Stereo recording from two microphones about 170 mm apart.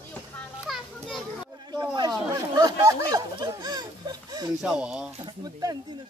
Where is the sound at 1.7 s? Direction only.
20° right (ahead or behind).